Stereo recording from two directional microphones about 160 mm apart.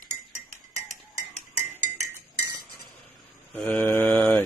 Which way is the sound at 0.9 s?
45° right (ahead or behind).